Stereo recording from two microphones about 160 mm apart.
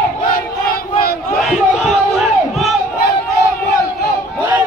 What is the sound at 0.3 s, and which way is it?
Battle cry, 65° left (ahead or behind).